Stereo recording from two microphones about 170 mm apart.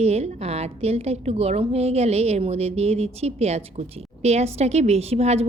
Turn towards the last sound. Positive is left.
turn(degrees=-35)  # may be behind; listen again after turning